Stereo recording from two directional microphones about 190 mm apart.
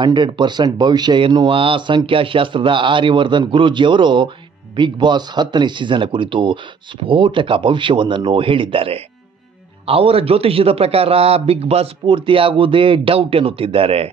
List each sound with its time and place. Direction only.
0.0 s a man's voice: 25° right (ahead or behind)